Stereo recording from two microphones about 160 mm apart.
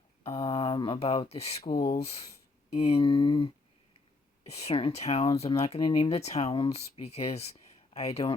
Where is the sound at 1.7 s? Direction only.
55° left (ahead or behind).